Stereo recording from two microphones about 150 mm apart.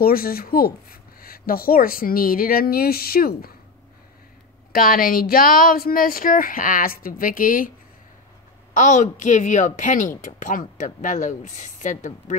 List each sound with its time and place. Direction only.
0.0 s speech: 80° left
4.7 s speech: 70° left (ahead or behind)
8.7 s a woman's voice: 55° left (ahead or behind)